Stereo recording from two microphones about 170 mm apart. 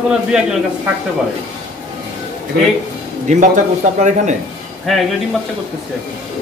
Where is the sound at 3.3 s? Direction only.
45° right (ahead or behind).